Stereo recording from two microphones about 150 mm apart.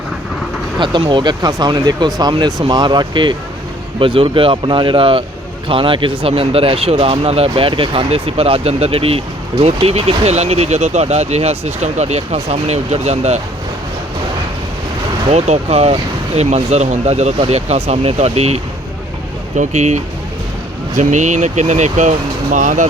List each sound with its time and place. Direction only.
0.8 s speech: 30° right (ahead or behind)
15.3 s speech: 45° right (ahead or behind)